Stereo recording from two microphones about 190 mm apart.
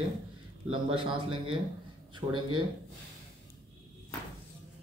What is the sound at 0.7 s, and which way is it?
A man's voice, 25° right (ahead or behind).